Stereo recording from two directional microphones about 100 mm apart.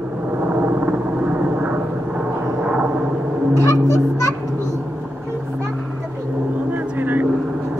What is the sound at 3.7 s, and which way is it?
Speech, 30° left (ahead or behind).